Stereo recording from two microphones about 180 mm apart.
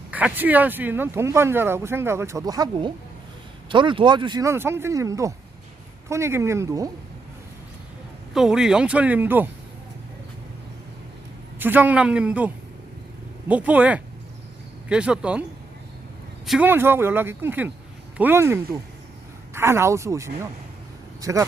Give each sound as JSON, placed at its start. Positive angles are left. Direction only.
{"t": 0.1, "sound": "speech", "side_deg": -5}
{"t": 8.3, "sound": "speech", "side_deg": -5}
{"t": 11.6, "sound": "speech", "side_deg": -10}
{"t": 13.5, "sound": "speech", "side_deg": -10}
{"t": 16.5, "sound": "speech", "side_deg": -10}